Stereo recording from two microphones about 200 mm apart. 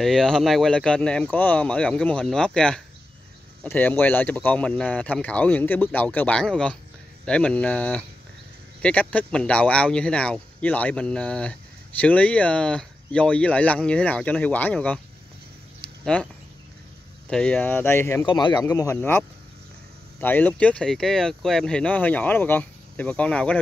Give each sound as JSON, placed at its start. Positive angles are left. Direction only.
{"t": 0.0, "sound": "speech", "side_deg": 0}
{"t": 16.1, "sound": "speech", "side_deg": 5}
{"t": 18.2, "sound": "speech", "side_deg": 20}